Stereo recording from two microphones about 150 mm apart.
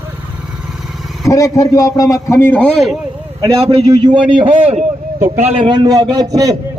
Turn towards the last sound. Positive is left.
turn(degrees=-25)  # may be behind; listen again after turning